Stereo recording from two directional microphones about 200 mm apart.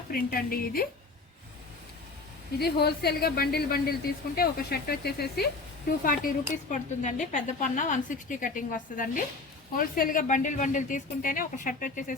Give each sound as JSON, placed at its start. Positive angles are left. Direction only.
{"t": 0.1, "sound": "a woman's voice", "side_deg": 45}
{"t": 2.6, "sound": "a woman's voice", "side_deg": 55}
{"t": 6.1, "sound": "speech", "side_deg": 40}